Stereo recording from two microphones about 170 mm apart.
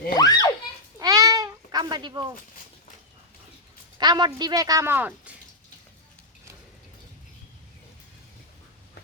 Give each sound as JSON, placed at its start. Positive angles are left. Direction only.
{"t": 0.2, "sound": "a sound", "side_deg": 20}
{"t": 0.9, "sound": "cat", "side_deg": -20}
{"t": 3.9, "sound": "speech", "side_deg": -25}